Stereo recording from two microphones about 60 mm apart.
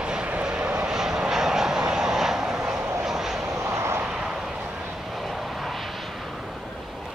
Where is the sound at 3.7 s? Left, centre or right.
Right.